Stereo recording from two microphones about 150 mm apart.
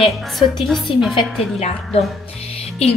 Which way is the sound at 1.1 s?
45° left (ahead or behind).